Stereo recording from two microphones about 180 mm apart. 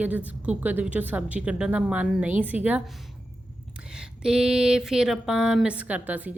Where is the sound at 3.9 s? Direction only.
5° right (ahead or behind).